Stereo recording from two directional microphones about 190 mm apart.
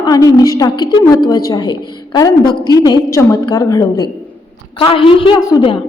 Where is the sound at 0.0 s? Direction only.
20° left (ahead or behind).